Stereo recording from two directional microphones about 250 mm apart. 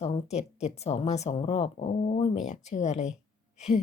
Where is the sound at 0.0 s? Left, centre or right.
Left.